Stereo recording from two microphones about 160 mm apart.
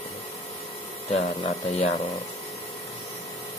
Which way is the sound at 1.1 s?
40° left (ahead or behind).